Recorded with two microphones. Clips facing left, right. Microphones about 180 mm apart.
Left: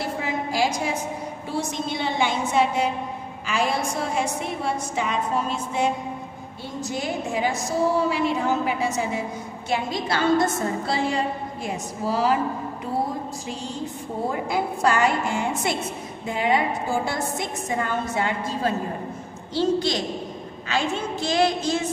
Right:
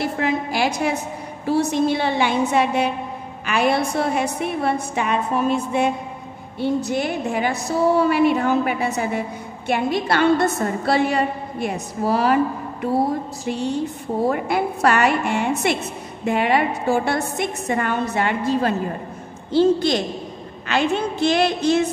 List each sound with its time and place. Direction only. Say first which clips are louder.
0.0 s a sound: right 5 dB; 65° right (ahead or behind)
1.5 s a woman's voice: right 10 dB; 65° right (ahead or behind)
13.5 s a woman's voice: right 12 dB; 65° right (ahead or behind)